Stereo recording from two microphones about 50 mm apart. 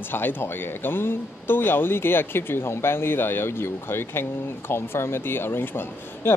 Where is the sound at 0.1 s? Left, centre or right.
Left.